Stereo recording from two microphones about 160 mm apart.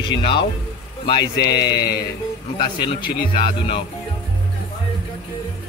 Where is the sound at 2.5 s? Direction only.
30° left (ahead or behind).